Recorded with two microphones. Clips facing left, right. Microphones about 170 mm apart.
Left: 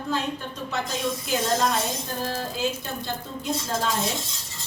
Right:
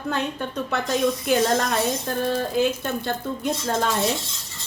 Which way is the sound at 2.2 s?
60° right (ahead or behind).